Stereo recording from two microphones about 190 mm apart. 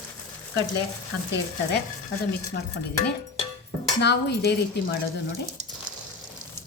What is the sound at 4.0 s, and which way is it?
Speech, 65° left (ahead or behind).